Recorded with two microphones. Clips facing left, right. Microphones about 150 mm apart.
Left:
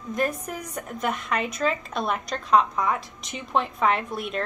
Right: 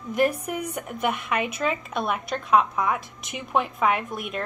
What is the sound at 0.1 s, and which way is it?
Speech, 20° right (ahead or behind).